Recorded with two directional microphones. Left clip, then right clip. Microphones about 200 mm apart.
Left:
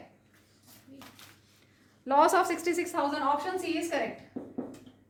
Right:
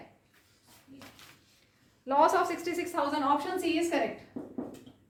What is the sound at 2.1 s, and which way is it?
Speech, 40° left (ahead or behind).